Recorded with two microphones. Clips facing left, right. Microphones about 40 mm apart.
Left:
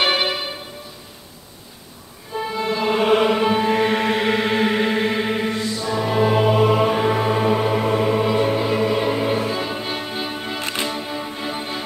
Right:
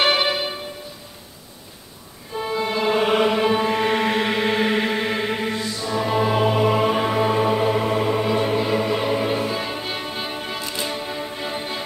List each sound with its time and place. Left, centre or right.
0.0 s music: centre
2.3 s music: centre
10.6 s music: left
10.9 s music: centre